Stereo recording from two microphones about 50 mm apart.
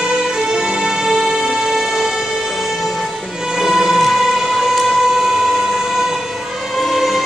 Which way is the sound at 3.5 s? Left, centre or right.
Centre.